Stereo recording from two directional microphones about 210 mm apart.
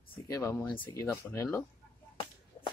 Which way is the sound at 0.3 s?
15° left (ahead or behind).